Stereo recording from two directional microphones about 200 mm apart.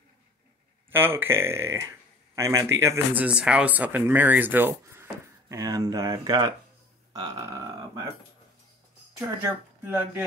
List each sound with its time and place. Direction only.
0.9 s speech: 10° right (ahead or behind)
7.2 s a sound: 20° right (ahead or behind)
9.4 s speech: 10° right (ahead or behind)